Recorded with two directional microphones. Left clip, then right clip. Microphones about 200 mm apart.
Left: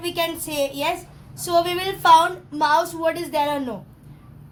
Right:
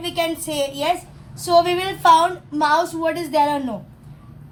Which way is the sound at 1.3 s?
15° left (ahead or behind).